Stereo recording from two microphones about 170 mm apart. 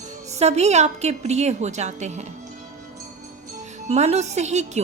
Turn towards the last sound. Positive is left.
turn(degrees=-40)  # may be behind; listen again after turning